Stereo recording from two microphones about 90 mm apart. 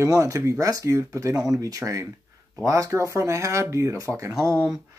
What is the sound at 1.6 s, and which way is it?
Speech, 35° right (ahead or behind).